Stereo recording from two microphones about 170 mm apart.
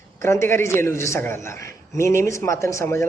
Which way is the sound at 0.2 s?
15° left (ahead or behind).